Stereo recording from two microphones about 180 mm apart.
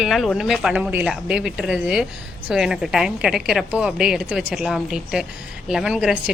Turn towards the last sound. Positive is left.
turn(degrees=-5)  # may be behind; listen again after turning